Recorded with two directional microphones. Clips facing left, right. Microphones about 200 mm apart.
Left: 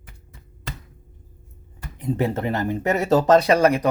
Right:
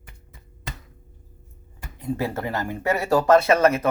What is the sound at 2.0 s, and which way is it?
Speech, 20° left (ahead or behind).